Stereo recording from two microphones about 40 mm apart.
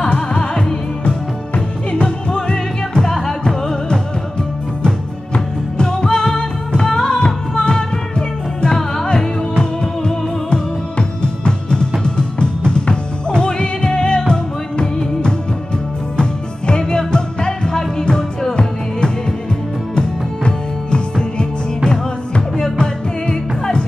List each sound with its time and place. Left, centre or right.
0.1 s music: left
1.0 s music: left